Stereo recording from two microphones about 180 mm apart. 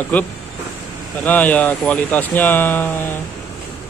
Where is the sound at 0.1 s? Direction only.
10° left (ahead or behind).